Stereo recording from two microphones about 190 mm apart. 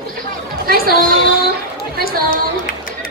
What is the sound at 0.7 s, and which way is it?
Speech, 50° right (ahead or behind).